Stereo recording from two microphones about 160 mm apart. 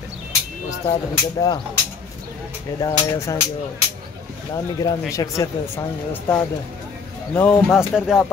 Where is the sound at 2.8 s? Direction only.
20° left (ahead or behind).